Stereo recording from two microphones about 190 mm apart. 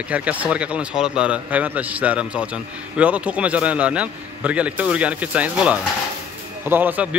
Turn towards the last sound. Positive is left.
turn(degrees=-10)  # may be behind; listen again after turning